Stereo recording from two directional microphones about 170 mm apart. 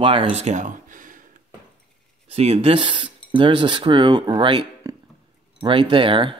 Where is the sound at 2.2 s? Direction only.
40° right (ahead or behind).